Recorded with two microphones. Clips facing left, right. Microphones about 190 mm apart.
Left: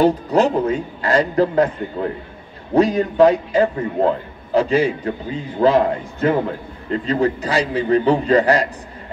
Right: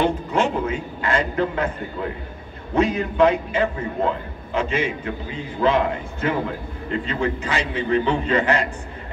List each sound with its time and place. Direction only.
0.0 s a man's voice: 35° left (ahead or behind)